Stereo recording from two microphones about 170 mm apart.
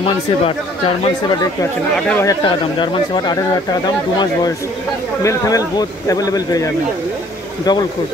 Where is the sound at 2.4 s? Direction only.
25° left (ahead or behind).